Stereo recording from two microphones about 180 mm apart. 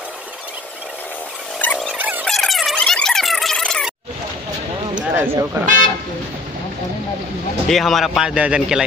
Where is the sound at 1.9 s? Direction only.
10° right (ahead or behind).